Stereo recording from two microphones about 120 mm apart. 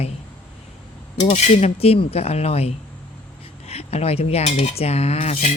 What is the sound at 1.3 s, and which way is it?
Cutlery, 60° left (ahead or behind).